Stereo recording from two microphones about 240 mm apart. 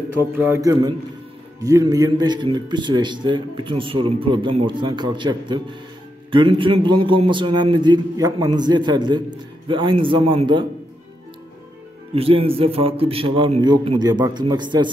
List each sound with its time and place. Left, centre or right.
0.3 s a man's voice: centre
12.2 s a man's voice: right